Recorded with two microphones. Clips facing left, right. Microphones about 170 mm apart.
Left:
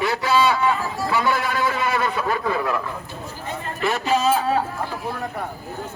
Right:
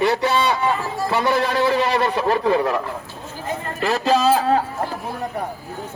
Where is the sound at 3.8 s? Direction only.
35° right (ahead or behind).